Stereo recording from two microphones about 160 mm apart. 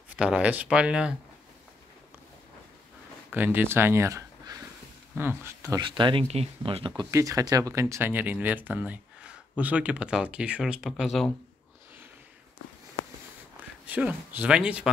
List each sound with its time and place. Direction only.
0.1 s speech: 5° right (ahead or behind)
3.3 s speech: 10° right (ahead or behind); by 6.9 s 35° right (ahead or behind)
7.0 s speech: 20° right (ahead or behind); by 11.3 s centre (ahead or behind)
13.8 s speech: 10° right (ahead or behind)